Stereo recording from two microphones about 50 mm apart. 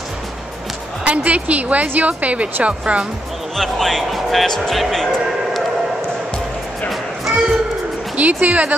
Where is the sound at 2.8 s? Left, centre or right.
Centre.